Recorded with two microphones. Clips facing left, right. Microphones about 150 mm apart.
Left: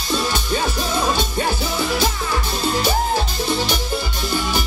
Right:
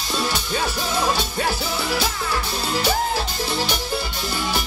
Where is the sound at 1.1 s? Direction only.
5° right (ahead or behind).